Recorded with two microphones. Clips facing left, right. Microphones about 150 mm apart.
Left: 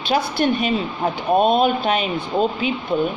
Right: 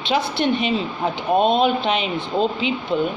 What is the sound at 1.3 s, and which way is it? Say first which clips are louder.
Speech: left 1 dB; 10° left (ahead or behind).